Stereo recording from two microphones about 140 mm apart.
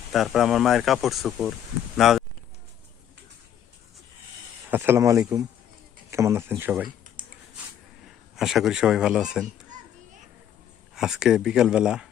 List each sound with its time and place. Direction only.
0.1 s speech: centre (ahead or behind)
4.7 s speech: 15° right (ahead or behind)
8.4 s speech: centre (ahead or behind)
10.9 s speech: 5° right (ahead or behind)